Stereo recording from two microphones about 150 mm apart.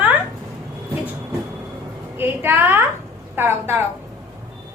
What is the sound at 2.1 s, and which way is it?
A woman's voice, 15° right (ahead or behind).